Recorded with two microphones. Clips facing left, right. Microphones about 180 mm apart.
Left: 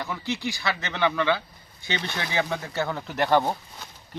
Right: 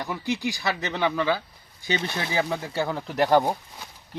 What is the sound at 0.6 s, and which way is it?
Speech, 40° right (ahead or behind).